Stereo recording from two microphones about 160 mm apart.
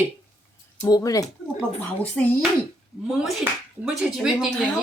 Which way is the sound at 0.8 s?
25° left (ahead or behind).